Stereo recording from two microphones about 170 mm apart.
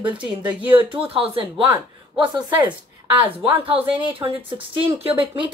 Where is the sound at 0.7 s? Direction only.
30° right (ahead or behind).